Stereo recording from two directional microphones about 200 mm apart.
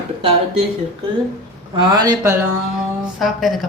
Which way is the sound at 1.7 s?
20° right (ahead or behind).